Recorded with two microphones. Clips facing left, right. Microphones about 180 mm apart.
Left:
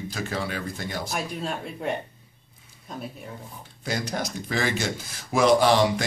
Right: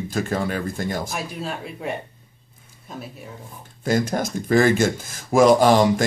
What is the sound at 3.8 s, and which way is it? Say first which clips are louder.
Speech: right 8 dB; 50° right (ahead or behind).